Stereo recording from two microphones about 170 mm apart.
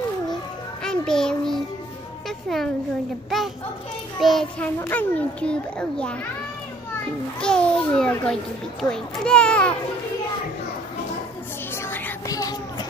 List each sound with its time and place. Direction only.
0.8 s a child's voice: 5° left (ahead or behind)
2.2 s music: centre (ahead or behind)
4.2 s a child's voice: centre (ahead or behind)
4.7 s a child's voice: 10° left (ahead or behind)
7.3 s a child's voice: 5° left (ahead or behind)
11.7 s a sound: 15° left (ahead or behind)